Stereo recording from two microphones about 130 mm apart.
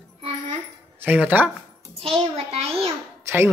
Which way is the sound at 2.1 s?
50° right (ahead or behind).